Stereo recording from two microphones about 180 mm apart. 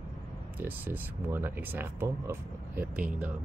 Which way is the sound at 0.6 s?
10° right (ahead or behind).